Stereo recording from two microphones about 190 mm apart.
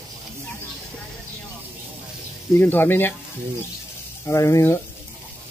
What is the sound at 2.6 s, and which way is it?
Speech, 10° left (ahead or behind).